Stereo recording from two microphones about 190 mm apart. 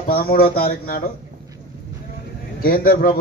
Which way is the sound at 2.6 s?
50° left (ahead or behind).